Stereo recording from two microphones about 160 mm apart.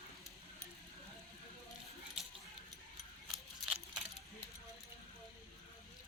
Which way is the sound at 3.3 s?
5° right (ahead or behind).